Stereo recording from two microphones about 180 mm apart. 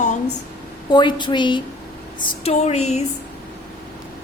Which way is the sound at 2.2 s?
35° left (ahead or behind).